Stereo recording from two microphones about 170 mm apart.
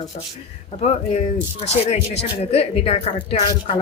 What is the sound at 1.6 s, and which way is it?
A woman's voice, 40° left (ahead or behind).